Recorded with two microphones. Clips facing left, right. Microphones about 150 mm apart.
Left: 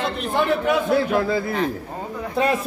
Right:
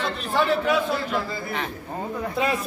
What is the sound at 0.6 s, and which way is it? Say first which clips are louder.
Speech: left 4 dB; 55° left (ahead or behind).